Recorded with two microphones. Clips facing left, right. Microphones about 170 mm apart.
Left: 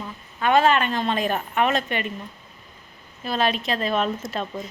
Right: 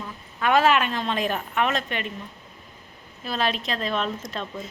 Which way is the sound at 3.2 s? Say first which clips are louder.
Left 3 dB; centre (ahead or behind).